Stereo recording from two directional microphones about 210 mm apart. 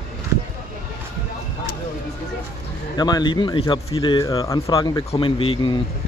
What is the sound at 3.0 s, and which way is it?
Speech, 20° left (ahead or behind).